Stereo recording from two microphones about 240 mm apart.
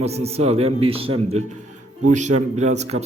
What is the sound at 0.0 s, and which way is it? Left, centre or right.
A man's voice, right.